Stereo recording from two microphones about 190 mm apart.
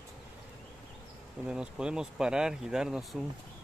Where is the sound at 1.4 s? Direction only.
5° right (ahead or behind).